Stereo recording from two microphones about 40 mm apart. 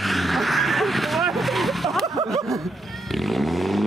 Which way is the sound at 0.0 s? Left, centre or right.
Centre.